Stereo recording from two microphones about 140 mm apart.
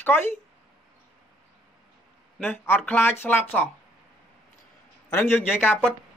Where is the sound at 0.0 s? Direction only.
15° left (ahead or behind).